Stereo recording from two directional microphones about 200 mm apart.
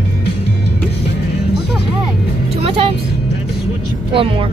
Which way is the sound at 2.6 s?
30° right (ahead or behind).